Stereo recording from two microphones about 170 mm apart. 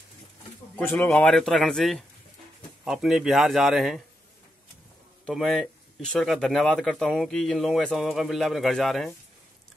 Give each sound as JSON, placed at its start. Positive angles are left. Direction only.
{"t": 0.7, "sound": "speech", "side_deg": 10}
{"t": 5.2, "sound": "speech", "side_deg": 0}